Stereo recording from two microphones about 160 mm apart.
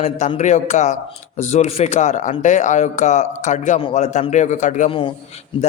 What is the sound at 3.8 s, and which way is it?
A man's voice, 40° left (ahead or behind).